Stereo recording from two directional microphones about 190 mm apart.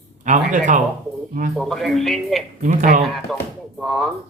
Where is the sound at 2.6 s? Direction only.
40° right (ahead or behind).